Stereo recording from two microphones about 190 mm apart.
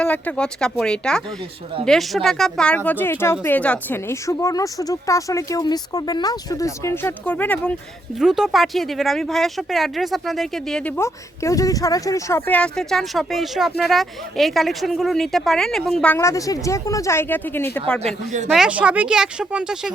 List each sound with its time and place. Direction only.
0.0 s a woman's voice: 5° left (ahead or behind)
18.0 s speech: 40° right (ahead or behind)
18.5 s speech: 5° right (ahead or behind)